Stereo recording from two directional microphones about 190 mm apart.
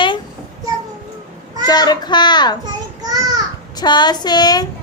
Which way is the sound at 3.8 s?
25° left (ahead or behind).